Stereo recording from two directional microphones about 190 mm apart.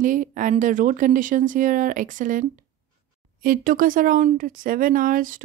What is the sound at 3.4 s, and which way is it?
Speech, 45° right (ahead or behind).